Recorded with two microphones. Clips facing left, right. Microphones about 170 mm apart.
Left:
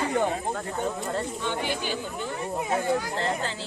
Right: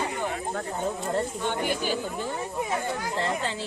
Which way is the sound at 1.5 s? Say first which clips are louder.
Even; 45° right (ahead or behind).